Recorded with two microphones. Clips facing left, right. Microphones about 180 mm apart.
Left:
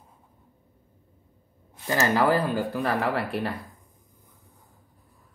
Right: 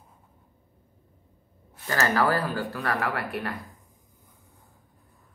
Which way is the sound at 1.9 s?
15° left (ahead or behind).